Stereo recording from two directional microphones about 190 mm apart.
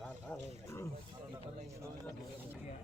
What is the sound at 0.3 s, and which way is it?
Wild animals, 15° left (ahead or behind).